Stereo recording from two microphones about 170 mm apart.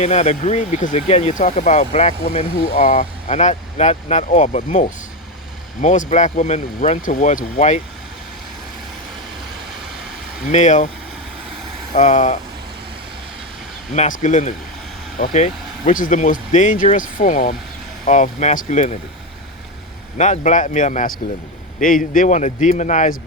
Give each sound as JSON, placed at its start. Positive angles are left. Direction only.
{"t": 0.0, "sound": "speech", "side_deg": 40}
{"t": 10.4, "sound": "speech", "side_deg": 45}
{"t": 11.9, "sound": "speech", "side_deg": 45}
{"t": 13.9, "sound": "speech", "side_deg": 45}
{"t": 18.0, "sound": "speech", "side_deg": 45}
{"t": 20.1, "sound": "speech", "side_deg": 45}